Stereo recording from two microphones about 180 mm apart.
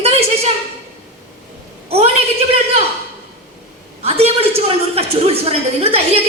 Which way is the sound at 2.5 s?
35° right (ahead or behind).